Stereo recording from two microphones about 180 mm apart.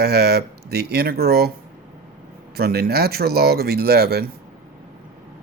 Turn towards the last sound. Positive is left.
turn(degrees=-60)  # may be behind; listen again after turning